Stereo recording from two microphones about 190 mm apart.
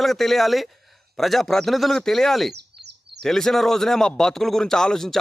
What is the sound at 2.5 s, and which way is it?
Bird, 60° right (ahead or behind).